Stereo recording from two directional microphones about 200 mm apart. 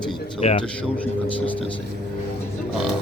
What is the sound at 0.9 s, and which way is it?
Speech, 5° left (ahead or behind).